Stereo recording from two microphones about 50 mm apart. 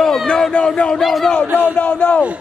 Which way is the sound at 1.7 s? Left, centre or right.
Left.